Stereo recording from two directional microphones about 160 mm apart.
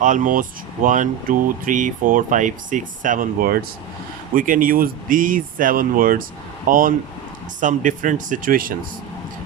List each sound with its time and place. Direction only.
0.0 s speech: 55° right (ahead or behind)